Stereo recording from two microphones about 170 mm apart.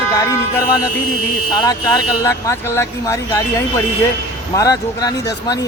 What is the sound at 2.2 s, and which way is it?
Speech, 15° left (ahead or behind).